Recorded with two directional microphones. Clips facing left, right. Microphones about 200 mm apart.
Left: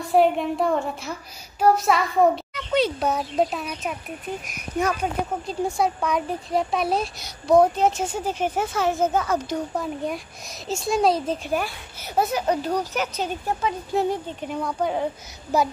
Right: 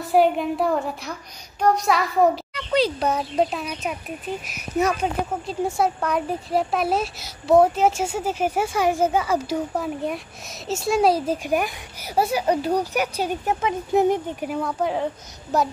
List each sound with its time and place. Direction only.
0.0 s speech: centre (ahead or behind); by 14.3 s 20° right (ahead or behind)
14.4 s speech: 5° right (ahead or behind)